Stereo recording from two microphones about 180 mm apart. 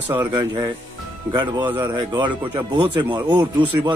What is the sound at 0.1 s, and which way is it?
Speech, 20° right (ahead or behind).